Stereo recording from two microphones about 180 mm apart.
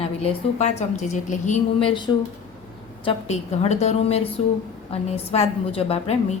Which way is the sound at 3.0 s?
35° left (ahead or behind).